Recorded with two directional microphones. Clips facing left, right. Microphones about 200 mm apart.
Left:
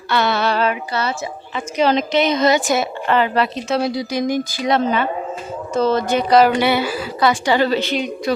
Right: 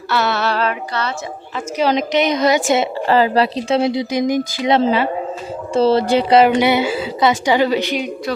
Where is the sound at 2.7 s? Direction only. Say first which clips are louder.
Right 3 dB; 25° right (ahead or behind).